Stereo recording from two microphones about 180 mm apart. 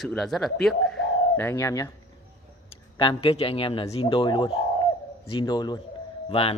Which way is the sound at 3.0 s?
30° left (ahead or behind).